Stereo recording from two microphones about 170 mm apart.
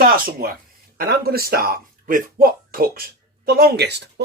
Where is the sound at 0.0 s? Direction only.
60° right (ahead or behind).